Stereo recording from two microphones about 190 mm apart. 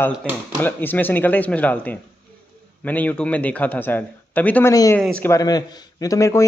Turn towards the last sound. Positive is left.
turn(degrees=15)  # may be behind; listen again after turning